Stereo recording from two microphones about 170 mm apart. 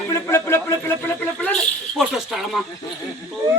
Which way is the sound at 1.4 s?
Centre (ahead or behind).